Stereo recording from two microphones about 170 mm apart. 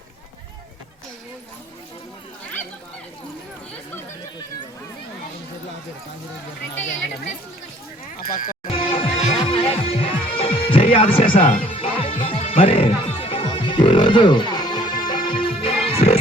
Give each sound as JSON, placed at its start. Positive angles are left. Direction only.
{"t": 8.2, "sound": "music", "side_deg": 55}
{"t": 8.7, "sound": "music", "side_deg": 35}
{"t": 11.3, "sound": "speech", "side_deg": 45}
{"t": 11.7, "sound": "music", "side_deg": 35}